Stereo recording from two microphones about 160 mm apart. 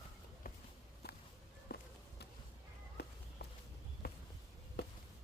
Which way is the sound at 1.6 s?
75° left (ahead or behind).